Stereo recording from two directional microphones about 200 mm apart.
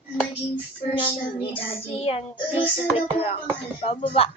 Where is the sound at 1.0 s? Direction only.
30° left (ahead or behind).